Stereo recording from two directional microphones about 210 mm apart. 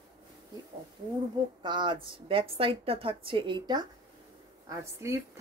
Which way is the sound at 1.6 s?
20° right (ahead or behind).